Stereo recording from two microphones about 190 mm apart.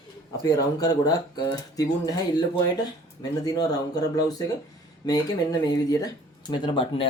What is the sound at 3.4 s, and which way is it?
Speech, 20° left (ahead or behind).